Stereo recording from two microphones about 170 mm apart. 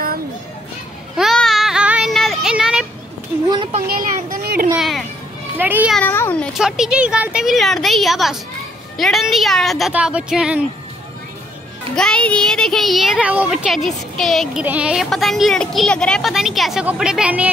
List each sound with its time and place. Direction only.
1.1 s child singing: centre (ahead or behind)
3.8 s children playing: 60° right (ahead or behind)
4.7 s a sound: centre (ahead or behind)
5.6 s a child's voice: 10° right (ahead or behind)
5.9 s speech: 10° left (ahead or behind)
6.5 s speech: 5° right (ahead or behind)
11.9 s speech: 5° left (ahead or behind)